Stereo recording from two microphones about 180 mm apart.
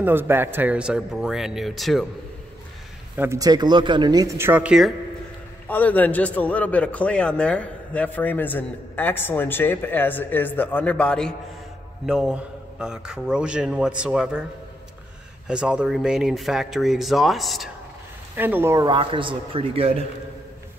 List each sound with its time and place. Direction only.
0.0 s a man's voice: 10° right (ahead or behind)
3.2 s speech: 15° right (ahead or behind)
5.7 s a man's voice: 10° left (ahead or behind)
15.4 s a man's voice: 5° right (ahead or behind)
18.3 s speech: 10° right (ahead or behind); by 20.1 s 30° right (ahead or behind)